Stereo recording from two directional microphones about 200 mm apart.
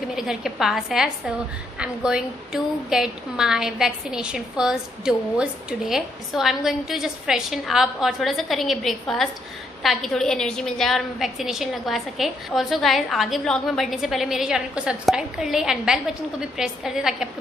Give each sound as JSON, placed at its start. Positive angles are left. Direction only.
{"t": 0.1, "sound": "a woman's voice", "side_deg": 0}